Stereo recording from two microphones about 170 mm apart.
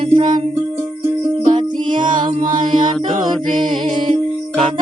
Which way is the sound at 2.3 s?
45° right (ahead or behind).